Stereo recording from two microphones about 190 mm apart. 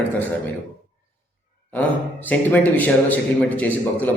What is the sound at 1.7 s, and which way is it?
Speech, 10° left (ahead or behind).